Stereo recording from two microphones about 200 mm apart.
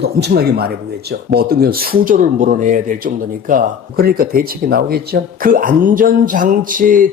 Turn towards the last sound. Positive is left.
turn(degrees=-40)  # may be behind; listen again after turning